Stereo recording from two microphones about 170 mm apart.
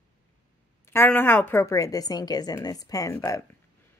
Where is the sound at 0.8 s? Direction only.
15° left (ahead or behind).